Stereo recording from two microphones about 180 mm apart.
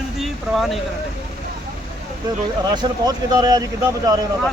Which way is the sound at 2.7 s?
25° right (ahead or behind).